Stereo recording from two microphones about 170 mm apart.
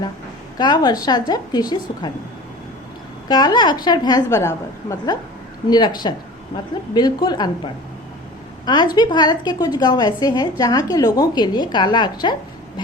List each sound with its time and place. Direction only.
0.6 s a woman's voice: 25° left (ahead or behind)
3.2 s a woman's voice: 25° left (ahead or behind)
8.6 s a woman's voice: 25° left (ahead or behind)